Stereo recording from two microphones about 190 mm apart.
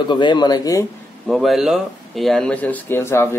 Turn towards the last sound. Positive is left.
turn(degrees=15)  # may be behind; listen again after turning